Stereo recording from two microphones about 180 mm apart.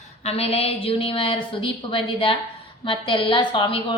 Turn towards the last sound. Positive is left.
turn(degrees=30)  # may be behind; listen again after turning